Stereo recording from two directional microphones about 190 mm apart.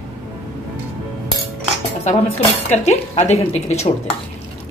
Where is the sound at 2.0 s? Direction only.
35° left (ahead or behind).